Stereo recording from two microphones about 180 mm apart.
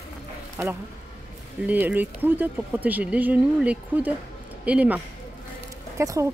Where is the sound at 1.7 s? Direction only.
10° right (ahead or behind).